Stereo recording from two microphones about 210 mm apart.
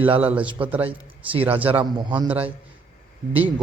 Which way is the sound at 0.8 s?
25° right (ahead or behind).